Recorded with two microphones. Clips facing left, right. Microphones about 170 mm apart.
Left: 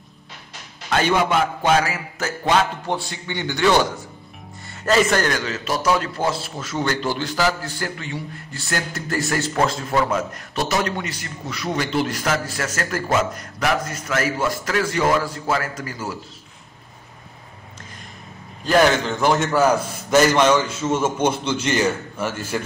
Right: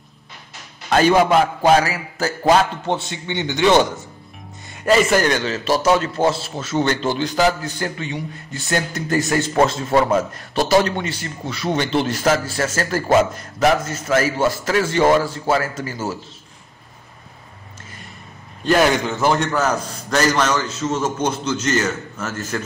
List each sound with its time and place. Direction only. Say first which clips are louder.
0.9 s a man's voice: right 5 dB; 40° right (ahead or behind)
2.9 s a man's voice: right 3 dB; 20° right (ahead or behind)
4.8 s a man's voice: right 3 dB; 10° right (ahead or behind)
5.3 s a man's voice: right 5 dB; 25° right (ahead or behind)
18.6 s a man's voice: even; centre (ahead or behind)